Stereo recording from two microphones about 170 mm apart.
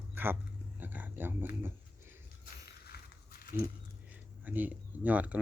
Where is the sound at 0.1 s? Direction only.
10° right (ahead or behind).